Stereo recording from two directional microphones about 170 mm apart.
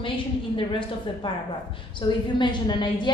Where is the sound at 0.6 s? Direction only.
30° left (ahead or behind).